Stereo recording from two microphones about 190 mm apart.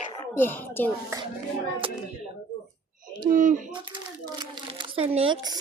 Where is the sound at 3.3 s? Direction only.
45° right (ahead or behind).